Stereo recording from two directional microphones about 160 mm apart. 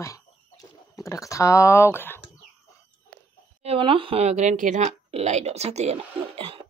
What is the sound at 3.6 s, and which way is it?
Speech, 35° right (ahead or behind).